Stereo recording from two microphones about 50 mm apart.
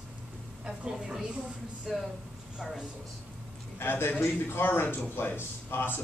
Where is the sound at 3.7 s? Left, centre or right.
Left.